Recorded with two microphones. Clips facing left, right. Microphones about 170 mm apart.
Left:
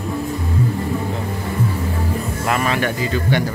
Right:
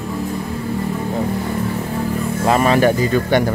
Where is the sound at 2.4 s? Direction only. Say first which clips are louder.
Right 7 dB; 35° right (ahead or behind).